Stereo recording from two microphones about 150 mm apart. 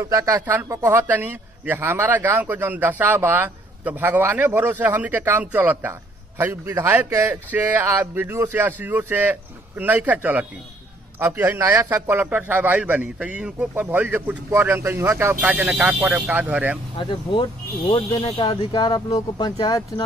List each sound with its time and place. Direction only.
0.1 s a man's voice: 20° right (ahead or behind)
12.2 s a man's voice: 10° right (ahead or behind)
16.9 s speech: 35° left (ahead or behind)